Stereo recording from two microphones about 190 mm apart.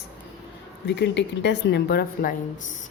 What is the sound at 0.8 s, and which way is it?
A woman's voice, 65° left (ahead or behind).